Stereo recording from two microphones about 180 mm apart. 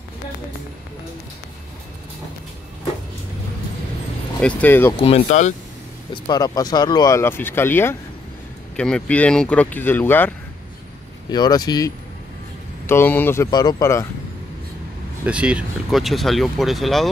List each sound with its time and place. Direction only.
4.4 s speech: 5° left (ahead or behind)
4.9 s speech: 35° left (ahead or behind)
6.1 s speech: 25° left (ahead or behind)
11.2 s speech: 20° left (ahead or behind)
13.5 s speech: 25° left (ahead or behind)
15.2 s speech: 5° right (ahead or behind)